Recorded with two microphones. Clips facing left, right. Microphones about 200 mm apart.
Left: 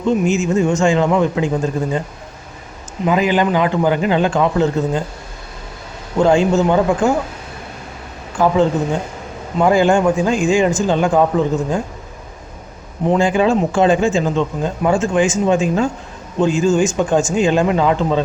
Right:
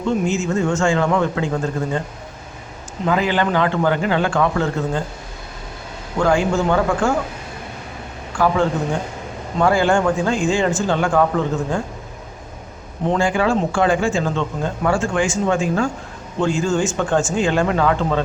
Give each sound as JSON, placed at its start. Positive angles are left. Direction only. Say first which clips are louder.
{"t": 0.0, "sound": "a man's voice", "louder": "left 4 dB", "side_deg": 15}
{"t": 3.1, "sound": "a man's voice", "louder": "left 3 dB", "side_deg": 15}
{"t": 6.1, "sound": "a man's voice", "louder": "left 4 dB", "side_deg": 20}
{"t": 8.3, "sound": "speech", "louder": "left 3 dB", "side_deg": 20}
{"t": 9.6, "sound": "a man's voice", "louder": "left 3 dB", "side_deg": 15}
{"t": 13.1, "sound": "a man's voice", "louder": "left 4 dB", "side_deg": 20}